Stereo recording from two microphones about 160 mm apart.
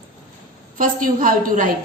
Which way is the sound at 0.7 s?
55° right (ahead or behind).